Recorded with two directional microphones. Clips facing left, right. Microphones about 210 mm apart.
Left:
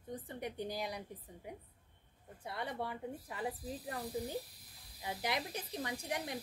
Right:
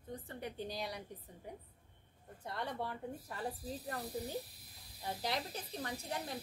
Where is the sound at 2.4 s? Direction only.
10° left (ahead or behind).